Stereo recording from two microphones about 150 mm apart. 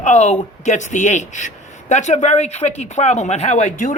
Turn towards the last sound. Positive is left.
turn(degrees=55)  # may be behind; listen again after turning